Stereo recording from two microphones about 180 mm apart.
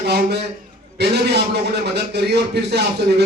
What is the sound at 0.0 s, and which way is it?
A man's voice, 65° right (ahead or behind).